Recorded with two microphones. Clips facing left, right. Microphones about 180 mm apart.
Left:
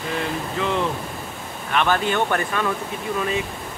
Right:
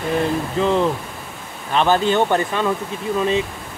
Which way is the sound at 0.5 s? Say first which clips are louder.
Right 5 dB; 35° right (ahead or behind).